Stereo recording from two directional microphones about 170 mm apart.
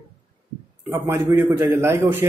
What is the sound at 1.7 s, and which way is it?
Speech, 15° right (ahead or behind).